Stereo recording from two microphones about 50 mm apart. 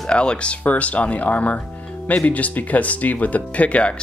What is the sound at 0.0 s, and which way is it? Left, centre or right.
Speech, centre.